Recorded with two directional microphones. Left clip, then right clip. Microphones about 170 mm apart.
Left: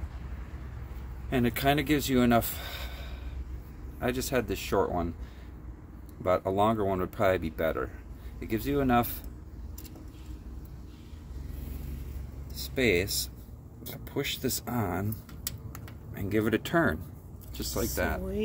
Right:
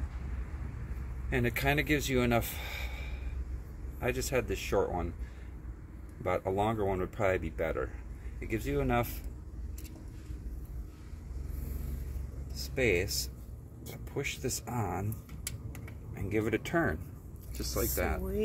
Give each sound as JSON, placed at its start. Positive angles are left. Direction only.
{"t": 1.3, "sound": "speech", "side_deg": 30}
{"t": 4.0, "sound": "speech", "side_deg": 30}
{"t": 6.2, "sound": "speech", "side_deg": 30}
{"t": 12.7, "sound": "speech", "side_deg": 30}
{"t": 16.2, "sound": "speech", "side_deg": 35}
{"t": 17.7, "sound": "speech", "side_deg": 15}